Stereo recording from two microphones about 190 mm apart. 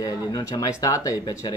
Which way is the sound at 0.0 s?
20° left (ahead or behind).